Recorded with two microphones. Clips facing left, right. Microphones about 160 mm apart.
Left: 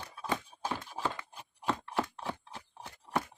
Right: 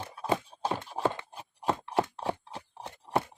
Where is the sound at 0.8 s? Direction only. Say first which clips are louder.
Right 6 dB; 55° right (ahead or behind).